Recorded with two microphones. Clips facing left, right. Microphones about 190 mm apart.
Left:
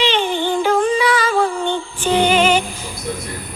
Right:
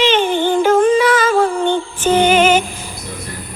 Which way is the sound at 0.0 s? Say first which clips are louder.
Right 4 dB; 45° right (ahead or behind).